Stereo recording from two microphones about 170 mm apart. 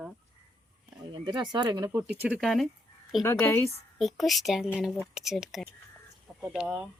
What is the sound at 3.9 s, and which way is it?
Speech, centre (ahead or behind).